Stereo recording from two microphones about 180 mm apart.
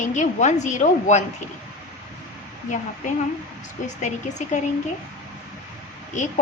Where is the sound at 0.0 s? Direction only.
40° left (ahead or behind).